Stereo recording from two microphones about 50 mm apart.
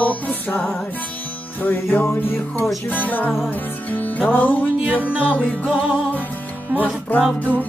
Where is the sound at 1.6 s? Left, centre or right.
Left.